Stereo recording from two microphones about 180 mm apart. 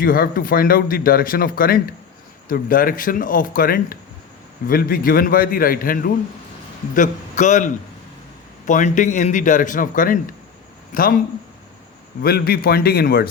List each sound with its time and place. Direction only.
0.0 s speech: 55° left (ahead or behind)
12.2 s a man's voice: 60° left (ahead or behind)